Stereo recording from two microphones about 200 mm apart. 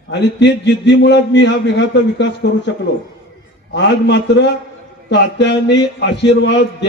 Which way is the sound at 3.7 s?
60° left (ahead or behind).